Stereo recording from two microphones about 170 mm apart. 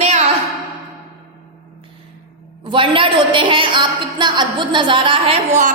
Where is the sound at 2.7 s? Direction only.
30° right (ahead or behind).